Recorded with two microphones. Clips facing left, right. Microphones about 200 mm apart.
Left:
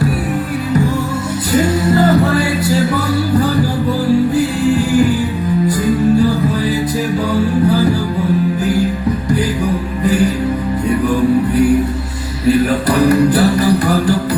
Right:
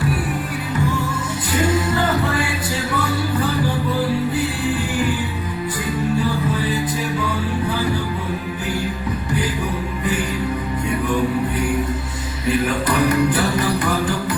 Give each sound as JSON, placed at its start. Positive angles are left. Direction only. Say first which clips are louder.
{"t": 1.5, "sound": "music", "louder": "left 6 dB", "side_deg": 40}
{"t": 12.5, "sound": "music", "louder": "left 7 dB", "side_deg": 35}